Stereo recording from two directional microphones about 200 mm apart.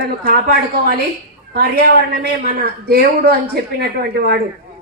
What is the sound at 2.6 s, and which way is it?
Speech, 50° right (ahead or behind).